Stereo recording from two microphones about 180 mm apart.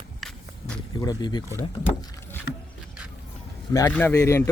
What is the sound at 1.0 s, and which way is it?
Speech, 20° left (ahead or behind).